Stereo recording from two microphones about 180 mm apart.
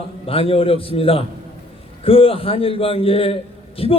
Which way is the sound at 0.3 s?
30° left (ahead or behind).